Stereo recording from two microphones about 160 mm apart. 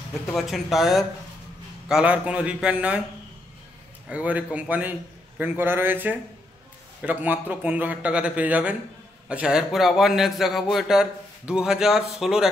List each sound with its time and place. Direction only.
0.3 s a man's voice: centre (ahead or behind)
4.1 s a man's voice: 10° right (ahead or behind)